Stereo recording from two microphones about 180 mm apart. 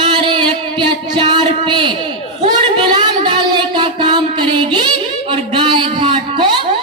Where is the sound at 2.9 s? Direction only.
25° right (ahead or behind).